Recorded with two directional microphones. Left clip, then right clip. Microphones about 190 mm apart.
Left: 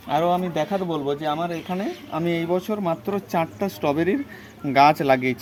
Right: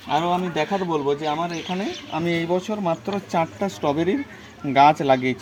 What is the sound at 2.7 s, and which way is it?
Speech, 15° right (ahead or behind).